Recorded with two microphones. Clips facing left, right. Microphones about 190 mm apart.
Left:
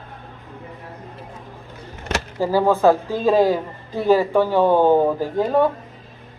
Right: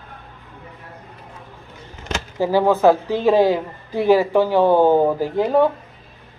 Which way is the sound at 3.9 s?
10° right (ahead or behind).